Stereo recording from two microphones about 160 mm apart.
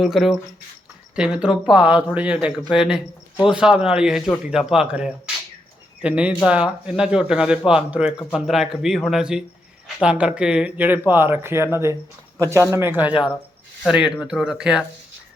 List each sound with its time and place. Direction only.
0.0 s a man's voice: centre (ahead or behind)